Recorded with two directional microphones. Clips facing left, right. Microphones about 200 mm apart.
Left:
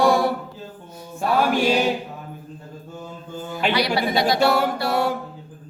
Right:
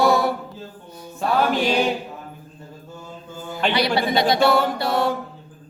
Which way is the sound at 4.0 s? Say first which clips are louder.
Right 1 dB; 25° right (ahead or behind).